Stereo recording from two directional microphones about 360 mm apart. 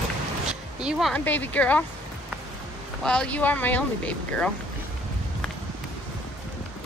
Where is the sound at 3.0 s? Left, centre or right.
Centre.